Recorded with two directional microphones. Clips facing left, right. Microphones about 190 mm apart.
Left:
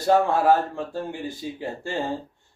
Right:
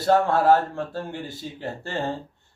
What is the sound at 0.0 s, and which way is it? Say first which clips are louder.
Speech: even; 15° left (ahead or behind).